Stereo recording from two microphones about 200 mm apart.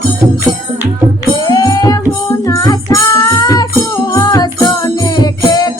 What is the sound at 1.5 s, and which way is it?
Music, 20° left (ahead or behind).